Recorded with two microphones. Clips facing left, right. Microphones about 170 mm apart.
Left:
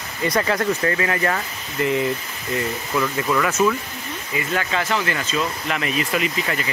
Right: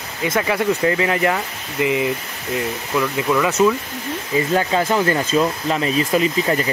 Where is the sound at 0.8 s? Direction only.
20° right (ahead or behind).